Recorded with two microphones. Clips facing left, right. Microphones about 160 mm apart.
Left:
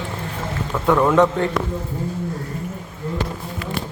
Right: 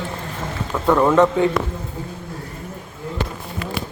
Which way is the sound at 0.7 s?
5° right (ahead or behind).